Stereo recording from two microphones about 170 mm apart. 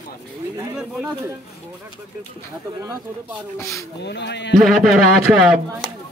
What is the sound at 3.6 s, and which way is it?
Speech, 20° left (ahead or behind).